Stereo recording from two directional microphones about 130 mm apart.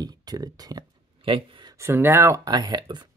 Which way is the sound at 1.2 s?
40° right (ahead or behind).